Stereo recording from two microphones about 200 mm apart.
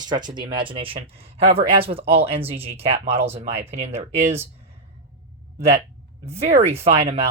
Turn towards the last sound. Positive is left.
turn(degrees=-30)  # may be behind; listen again after turning